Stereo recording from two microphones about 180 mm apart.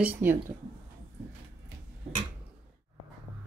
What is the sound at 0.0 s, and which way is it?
Speech, 10° right (ahead or behind).